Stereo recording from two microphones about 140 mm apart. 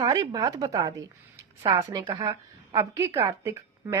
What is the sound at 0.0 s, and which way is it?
A woman's voice, 30° right (ahead or behind).